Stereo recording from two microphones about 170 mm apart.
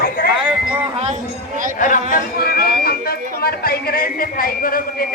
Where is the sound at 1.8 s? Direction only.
55° left (ahead or behind).